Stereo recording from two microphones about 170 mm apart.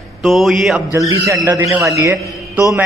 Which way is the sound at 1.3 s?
20° right (ahead or behind).